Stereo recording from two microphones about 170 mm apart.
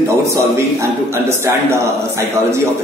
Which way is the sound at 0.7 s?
15° right (ahead or behind).